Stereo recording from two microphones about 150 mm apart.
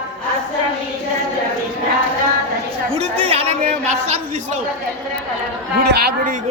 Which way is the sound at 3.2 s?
45° right (ahead or behind).